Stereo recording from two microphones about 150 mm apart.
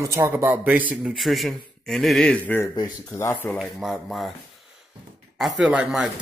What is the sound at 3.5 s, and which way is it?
Speech, centre (ahead or behind).